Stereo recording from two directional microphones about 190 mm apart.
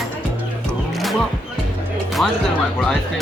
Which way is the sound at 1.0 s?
Centre (ahead or behind).